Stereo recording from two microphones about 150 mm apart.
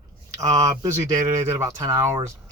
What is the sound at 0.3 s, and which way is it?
Speech, 25° right (ahead or behind).